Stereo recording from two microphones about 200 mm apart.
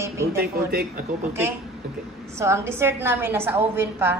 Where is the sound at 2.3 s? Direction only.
15° right (ahead or behind).